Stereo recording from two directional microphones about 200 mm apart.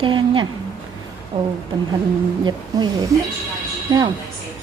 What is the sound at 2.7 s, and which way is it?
Speech, 20° right (ahead or behind).